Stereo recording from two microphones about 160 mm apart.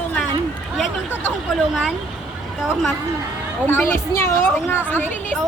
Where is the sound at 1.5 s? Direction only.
Centre (ahead or behind).